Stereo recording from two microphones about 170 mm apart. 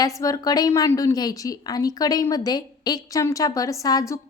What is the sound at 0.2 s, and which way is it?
Speech, 20° left (ahead or behind).